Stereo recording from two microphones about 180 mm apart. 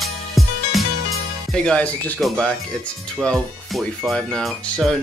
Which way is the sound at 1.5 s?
5° left (ahead or behind).